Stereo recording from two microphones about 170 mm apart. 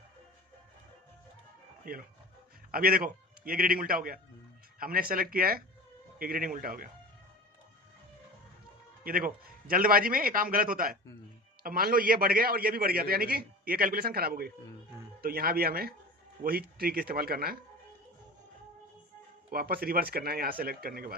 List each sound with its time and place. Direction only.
1.8 s a man's voice: 55° right (ahead or behind)
9.0 s a man's voice: 55° right (ahead or behind)
19.5 s a man's voice: 60° right (ahead or behind)